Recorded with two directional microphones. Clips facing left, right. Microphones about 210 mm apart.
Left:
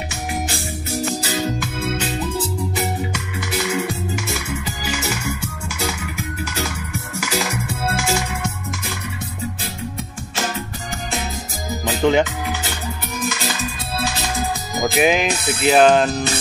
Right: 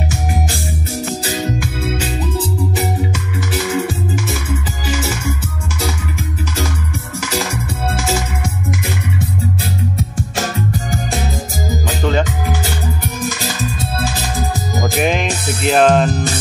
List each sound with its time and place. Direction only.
1.6 s organ: 5° right (ahead or behind)
3.8 s music: 5° right (ahead or behind)
7.9 s music: centre (ahead or behind)
12.0 s music: 15° left (ahead or behind)
14.8 s music: 5° left (ahead or behind)